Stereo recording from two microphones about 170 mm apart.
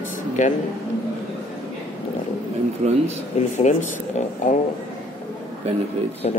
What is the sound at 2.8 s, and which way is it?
Speech, 40° right (ahead or behind).